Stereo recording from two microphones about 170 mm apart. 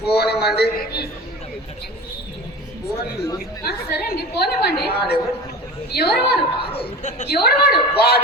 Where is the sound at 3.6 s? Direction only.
70° left (ahead or behind).